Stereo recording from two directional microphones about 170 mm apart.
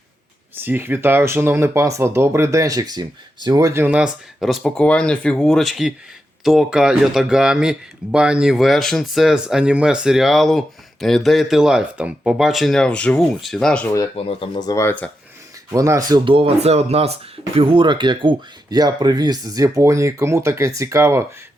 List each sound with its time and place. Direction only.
0.5 s speech: 10° right (ahead or behind); by 13.9 s 5° left (ahead or behind)
14.2 s speech: 30° left (ahead or behind); by 15.1 s 10° left (ahead or behind)
15.7 s speech: 20° right (ahead or behind)